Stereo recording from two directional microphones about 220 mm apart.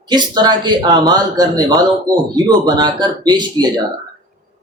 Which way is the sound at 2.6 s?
20° right (ahead or behind).